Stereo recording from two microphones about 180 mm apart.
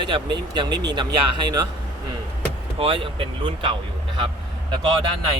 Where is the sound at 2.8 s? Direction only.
30° right (ahead or behind).